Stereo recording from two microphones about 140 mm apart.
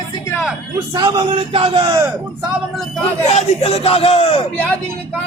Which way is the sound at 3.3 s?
50° left (ahead or behind).